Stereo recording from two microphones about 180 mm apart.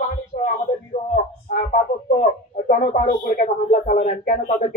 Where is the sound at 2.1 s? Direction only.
40° left (ahead or behind).